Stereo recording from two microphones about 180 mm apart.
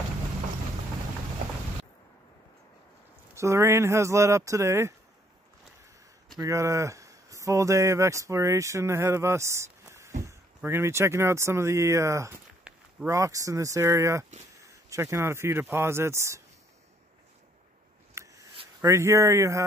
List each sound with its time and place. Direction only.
3.3 s speech: 15° right (ahead or behind)
6.3 s speech: 15° right (ahead or behind)
18.2 s a sound: 15° right (ahead or behind)
18.8 s speech: 15° right (ahead or behind)